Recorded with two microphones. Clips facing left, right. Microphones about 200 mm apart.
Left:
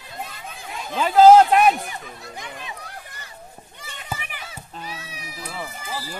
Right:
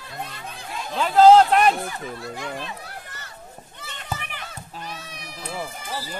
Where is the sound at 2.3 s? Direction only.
15° left (ahead or behind).